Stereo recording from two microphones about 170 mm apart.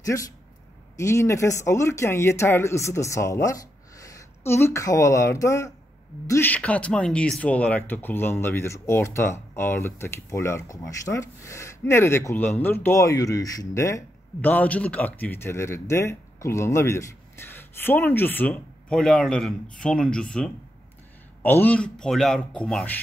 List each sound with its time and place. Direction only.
0.0 s speech: 20° left (ahead or behind)